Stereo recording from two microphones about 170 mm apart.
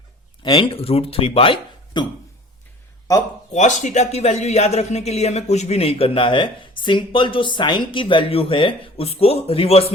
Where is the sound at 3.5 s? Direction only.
45° left (ahead or behind).